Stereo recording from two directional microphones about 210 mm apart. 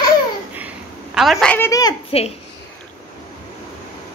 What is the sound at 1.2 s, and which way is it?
Speech, centre (ahead or behind).